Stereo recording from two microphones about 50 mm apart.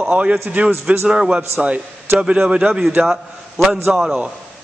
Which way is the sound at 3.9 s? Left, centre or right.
Centre.